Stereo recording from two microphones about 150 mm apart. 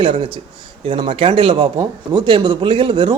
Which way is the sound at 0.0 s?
35° right (ahead or behind).